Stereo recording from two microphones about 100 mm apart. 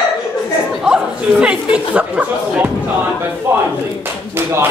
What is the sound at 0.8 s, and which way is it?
Chatter, 10° right (ahead or behind).